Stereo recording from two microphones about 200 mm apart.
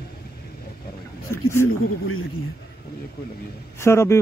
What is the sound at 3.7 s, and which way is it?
Speech, 15° left (ahead or behind).